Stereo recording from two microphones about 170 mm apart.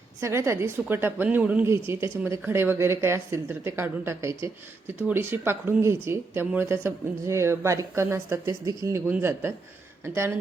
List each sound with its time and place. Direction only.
0.2 s speech: 15° right (ahead or behind)